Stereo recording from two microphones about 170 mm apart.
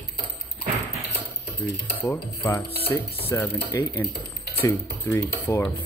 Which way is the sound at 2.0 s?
15° left (ahead or behind).